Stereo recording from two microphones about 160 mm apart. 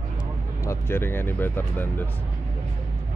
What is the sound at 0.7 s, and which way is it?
Speech, 15° left (ahead or behind).